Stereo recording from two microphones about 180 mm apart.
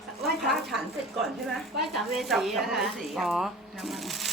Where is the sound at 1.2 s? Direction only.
Centre (ahead or behind).